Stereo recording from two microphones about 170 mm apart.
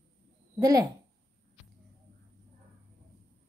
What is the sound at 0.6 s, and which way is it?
Speech, 20° right (ahead or behind).